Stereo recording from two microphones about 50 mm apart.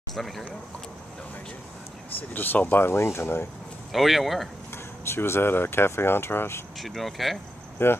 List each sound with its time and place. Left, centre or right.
0.1 s speech: centre
2.3 s speech: left
3.9 s speech: centre
5.0 s speech: left
6.8 s speech: centre
7.8 s speech: left